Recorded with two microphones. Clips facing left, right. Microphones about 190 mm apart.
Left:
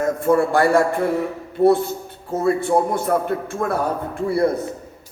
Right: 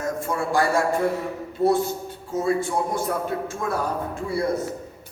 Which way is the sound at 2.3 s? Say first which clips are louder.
Left 5 dB; 60° left (ahead or behind).